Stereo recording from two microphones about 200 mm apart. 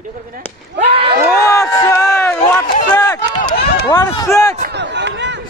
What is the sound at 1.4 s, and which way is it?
Speech, 15° left (ahead or behind).